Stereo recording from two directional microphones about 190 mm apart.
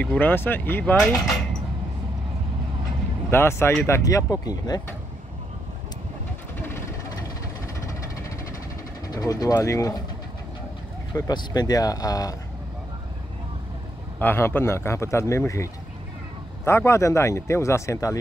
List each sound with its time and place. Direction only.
0.0 s speech: 10° left (ahead or behind)
3.3 s speech: 15° left (ahead or behind)
9.1 s speech: 20° left (ahead or behind)
11.1 s speech: 20° left (ahead or behind)
14.2 s speech: 10° left (ahead or behind)